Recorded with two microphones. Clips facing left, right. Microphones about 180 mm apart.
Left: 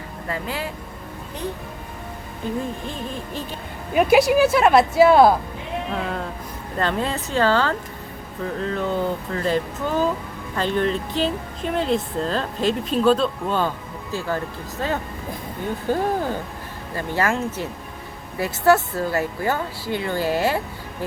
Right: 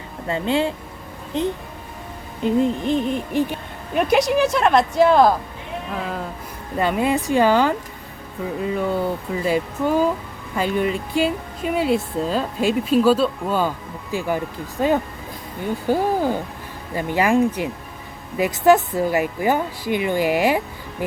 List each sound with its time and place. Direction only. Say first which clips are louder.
0.3 s speech: right 8 dB; 25° right (ahead or behind)
2.4 s speech: right 8 dB; 20° right (ahead or behind)
3.9 s a woman's voice: left 2 dB; 5° left (ahead or behind); by 20.6 s 15° right (ahead or behind)